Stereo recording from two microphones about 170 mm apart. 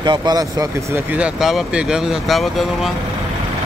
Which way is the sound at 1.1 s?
5° right (ahead or behind).